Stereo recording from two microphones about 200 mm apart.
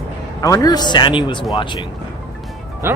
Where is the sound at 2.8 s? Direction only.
10° right (ahead or behind).